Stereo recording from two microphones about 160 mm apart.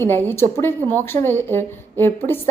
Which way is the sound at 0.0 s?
15° left (ahead or behind).